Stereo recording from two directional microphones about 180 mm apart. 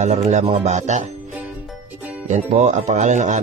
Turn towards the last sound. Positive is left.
turn(degrees=-40)  # may be behind; listen again after turning